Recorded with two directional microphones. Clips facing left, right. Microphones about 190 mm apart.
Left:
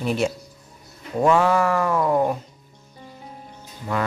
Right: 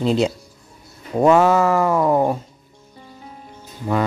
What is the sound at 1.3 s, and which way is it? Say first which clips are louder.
Speech: right 4 dB; 20° right (ahead or behind).